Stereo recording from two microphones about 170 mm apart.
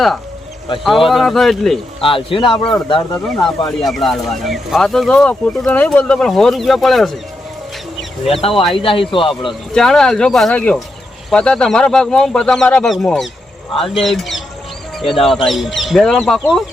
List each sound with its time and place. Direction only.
0.9 s speech: centre (ahead or behind)
2.0 s speech: 30° left (ahead or behind)
3.2 s speech: 5° left (ahead or behind)
8.2 s speech: 35° left (ahead or behind)
9.5 s speech: centre (ahead or behind)